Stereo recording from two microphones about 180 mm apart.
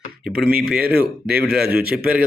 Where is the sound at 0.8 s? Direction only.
60° right (ahead or behind).